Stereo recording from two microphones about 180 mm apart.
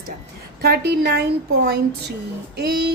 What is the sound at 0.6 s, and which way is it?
A woman's voice, 65° right (ahead or behind).